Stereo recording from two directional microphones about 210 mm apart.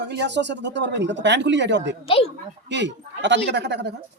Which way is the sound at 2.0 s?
30° left (ahead or behind).